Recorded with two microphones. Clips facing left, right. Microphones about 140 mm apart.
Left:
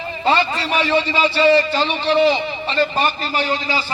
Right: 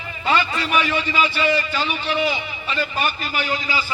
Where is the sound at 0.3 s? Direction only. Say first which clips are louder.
Left 3 dB; 35° left (ahead or behind).